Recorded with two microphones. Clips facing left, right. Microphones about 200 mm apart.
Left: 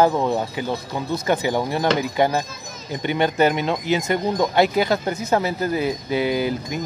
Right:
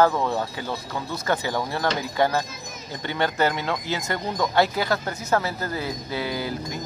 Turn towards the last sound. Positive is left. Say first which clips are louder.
# left 6 dB
turn(degrees=20)  # may be behind; listen again after turning